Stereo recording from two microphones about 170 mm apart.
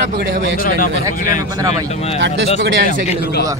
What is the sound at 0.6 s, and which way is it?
Speech, 55° left (ahead or behind).